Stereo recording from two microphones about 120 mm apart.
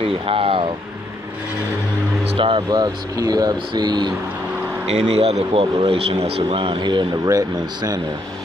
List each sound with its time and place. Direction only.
0.0 s speech: 50° right (ahead or behind)
2.3 s speech: 45° right (ahead or behind)
4.8 s speech: 60° right (ahead or behind); by 8.0 s 30° right (ahead or behind)